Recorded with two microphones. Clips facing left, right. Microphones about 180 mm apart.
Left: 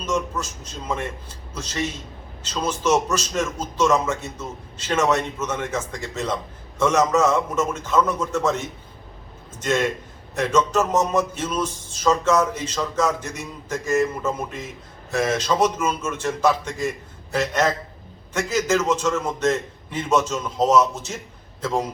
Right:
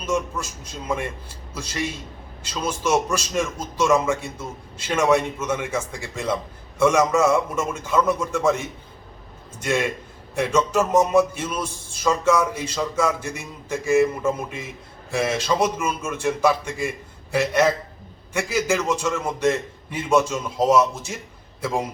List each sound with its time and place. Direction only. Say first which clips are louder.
0.0 s a man's voice: even; 10° right (ahead or behind)